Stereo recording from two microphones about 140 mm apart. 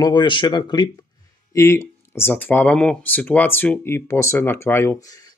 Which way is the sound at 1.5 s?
20° left (ahead or behind).